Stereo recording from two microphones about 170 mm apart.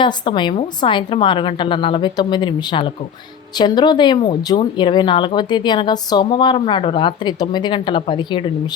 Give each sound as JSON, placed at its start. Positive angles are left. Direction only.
{"t": 0.0, "sound": "speech", "side_deg": 25}